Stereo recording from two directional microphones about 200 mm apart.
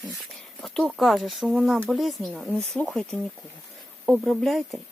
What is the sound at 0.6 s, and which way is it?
Speech, centre (ahead or behind).